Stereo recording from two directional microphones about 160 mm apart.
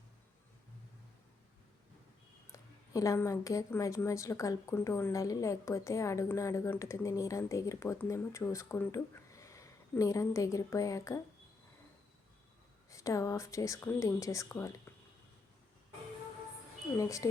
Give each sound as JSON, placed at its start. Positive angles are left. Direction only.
{"t": 2.5, "sound": "a woman's voice", "side_deg": 20}
{"t": 12.9, "sound": "a woman's voice", "side_deg": 20}
{"t": 17.0, "sound": "a woman's voice", "side_deg": 20}